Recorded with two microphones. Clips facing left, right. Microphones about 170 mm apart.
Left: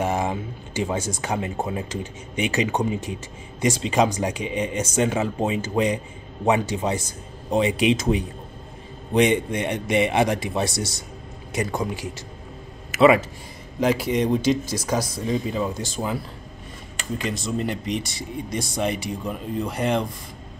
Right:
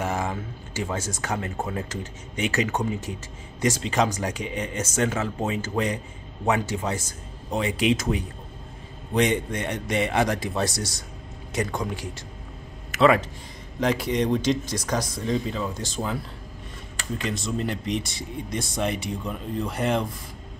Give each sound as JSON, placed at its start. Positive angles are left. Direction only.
{"t": 0.0, "sound": "a sound", "side_deg": 20}
{"t": 0.8, "sound": "speech", "side_deg": 15}
{"t": 11.5, "sound": "speech", "side_deg": 10}
{"t": 17.2, "sound": "speech", "side_deg": 0}